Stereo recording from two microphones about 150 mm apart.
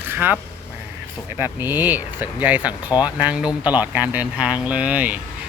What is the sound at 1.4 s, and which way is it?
Speech, 15° right (ahead or behind).